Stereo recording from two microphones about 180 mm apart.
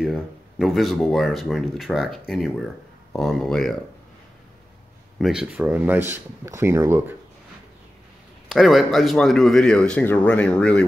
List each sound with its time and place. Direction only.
0.0 s speech: 5° right (ahead or behind)
5.2 s speech: 5° right (ahead or behind)
8.5 s speech: centre (ahead or behind)